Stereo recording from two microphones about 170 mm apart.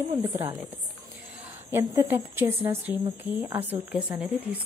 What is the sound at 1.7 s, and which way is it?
A woman's voice, 20° right (ahead or behind).